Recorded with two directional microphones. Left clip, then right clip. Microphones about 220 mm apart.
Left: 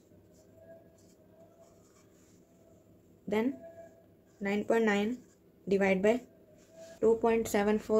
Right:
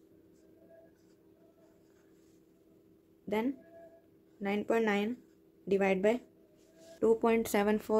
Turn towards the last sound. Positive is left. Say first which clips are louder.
# left 1 dB
turn(degrees=-20)  # may be behind; listen again after turning